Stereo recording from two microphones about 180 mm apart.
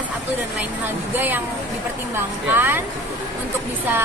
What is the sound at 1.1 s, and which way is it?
Speech, 10° right (ahead or behind).